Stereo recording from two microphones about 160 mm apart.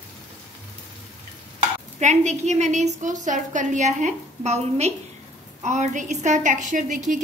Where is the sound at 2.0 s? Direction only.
45° right (ahead or behind).